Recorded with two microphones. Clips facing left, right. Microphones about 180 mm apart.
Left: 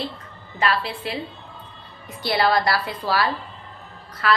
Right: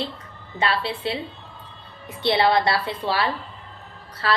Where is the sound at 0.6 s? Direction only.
30° right (ahead or behind).